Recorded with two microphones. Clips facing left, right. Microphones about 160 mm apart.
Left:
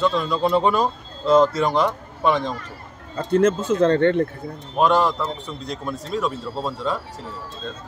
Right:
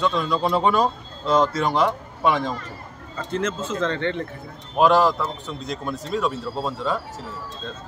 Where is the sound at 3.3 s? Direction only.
50° left (ahead or behind).